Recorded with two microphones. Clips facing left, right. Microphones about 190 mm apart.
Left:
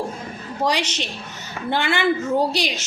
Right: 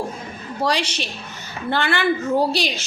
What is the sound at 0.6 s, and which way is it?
A woman's voice, 15° left (ahead or behind).